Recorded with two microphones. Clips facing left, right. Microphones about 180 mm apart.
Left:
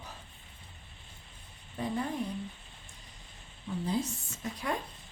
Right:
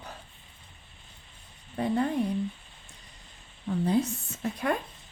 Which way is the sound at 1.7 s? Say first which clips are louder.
Right 7 dB; 65° right (ahead or behind).